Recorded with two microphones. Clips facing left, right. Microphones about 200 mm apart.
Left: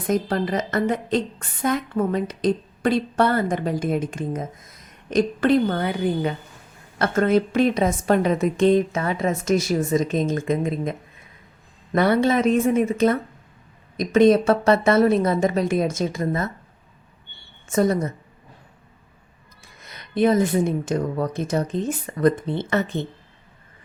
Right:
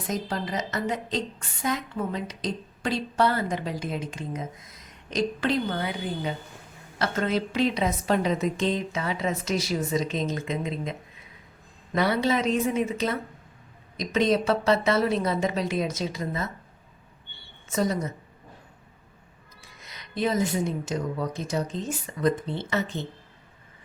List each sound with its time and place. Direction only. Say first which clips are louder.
0.1 s a woman's voice: left 8 dB; 55° left (ahead or behind)
11.9 s a woman's voice: left 5 dB; 55° left (ahead or behind)
17.7 s a woman's voice: left 6 dB; 55° left (ahead or behind)
19.6 s speech: left 3 dB; 55° left (ahead or behind)